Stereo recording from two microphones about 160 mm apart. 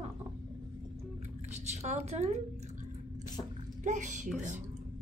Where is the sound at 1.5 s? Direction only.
45° right (ahead or behind).